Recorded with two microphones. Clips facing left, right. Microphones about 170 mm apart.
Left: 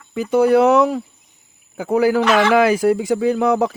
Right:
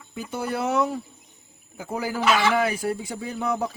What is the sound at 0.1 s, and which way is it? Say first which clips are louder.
A man's voice: left 15 dB; 90° left.